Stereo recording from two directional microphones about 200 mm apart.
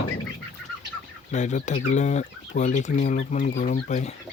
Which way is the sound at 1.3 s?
35° left (ahead or behind).